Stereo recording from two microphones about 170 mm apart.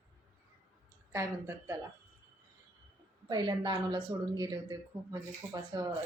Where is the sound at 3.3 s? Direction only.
25° right (ahead or behind).